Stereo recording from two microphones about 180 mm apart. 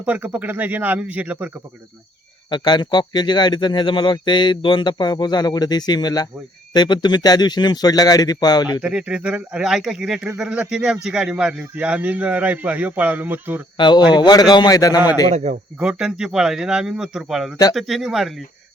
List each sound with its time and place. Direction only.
0.0 s speech: 10° right (ahead or behind)
2.5 s speech: 25° left (ahead or behind)
8.8 s speech: 5° right (ahead or behind)
13.7 s speech: 25° left (ahead or behind)
15.8 s a man's voice: 5° right (ahead or behind)